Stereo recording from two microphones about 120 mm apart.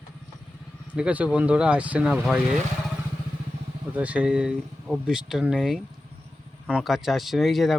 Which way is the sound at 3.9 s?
10° right (ahead or behind).